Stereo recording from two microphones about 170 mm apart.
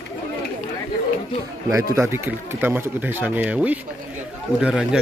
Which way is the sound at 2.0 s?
15° right (ahead or behind).